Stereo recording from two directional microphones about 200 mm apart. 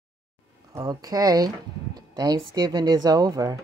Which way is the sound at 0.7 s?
20° right (ahead or behind).